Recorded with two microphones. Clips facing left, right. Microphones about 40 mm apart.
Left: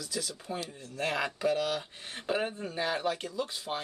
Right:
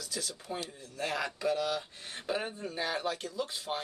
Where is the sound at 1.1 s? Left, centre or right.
Left.